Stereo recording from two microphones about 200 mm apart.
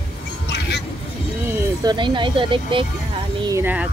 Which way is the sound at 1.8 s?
25° right (ahead or behind).